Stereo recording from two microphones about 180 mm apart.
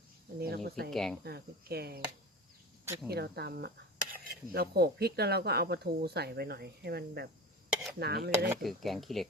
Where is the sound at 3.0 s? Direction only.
65° right (ahead or behind).